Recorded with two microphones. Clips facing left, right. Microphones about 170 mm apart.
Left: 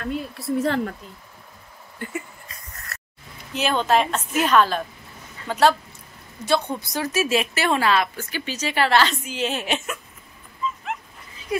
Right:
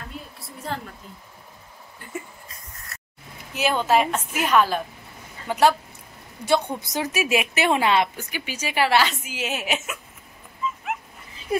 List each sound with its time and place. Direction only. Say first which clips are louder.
0.0 s speech: left 11 dB; 75° left (ahead or behind)
3.5 s a woman's voice: even; 10° right (ahead or behind)
10.6 s dog: left 1 dB; 5° right (ahead or behind)